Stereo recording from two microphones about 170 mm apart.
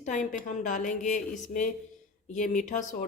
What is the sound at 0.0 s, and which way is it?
Speech, 50° left (ahead or behind).